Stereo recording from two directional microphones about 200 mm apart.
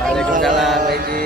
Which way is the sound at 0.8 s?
50° right (ahead or behind).